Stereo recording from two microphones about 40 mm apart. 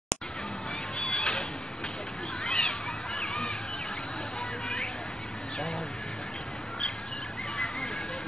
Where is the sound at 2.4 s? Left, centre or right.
Centre.